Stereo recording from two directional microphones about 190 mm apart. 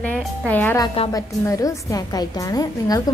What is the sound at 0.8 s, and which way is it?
Speech, 30° left (ahead or behind).